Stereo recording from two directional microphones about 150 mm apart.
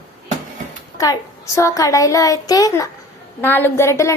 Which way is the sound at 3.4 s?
15° left (ahead or behind).